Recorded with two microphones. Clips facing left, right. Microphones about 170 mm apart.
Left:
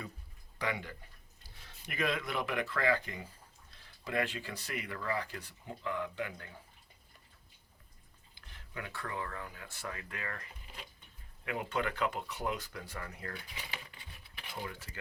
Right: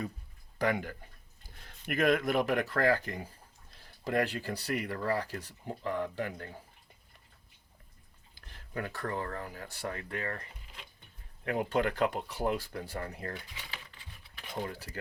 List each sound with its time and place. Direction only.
0.6 s speech: 45° right (ahead or behind)
8.4 s speech: 45° right (ahead or behind)
11.4 s speech: 40° right (ahead or behind)
14.5 s speech: 35° right (ahead or behind)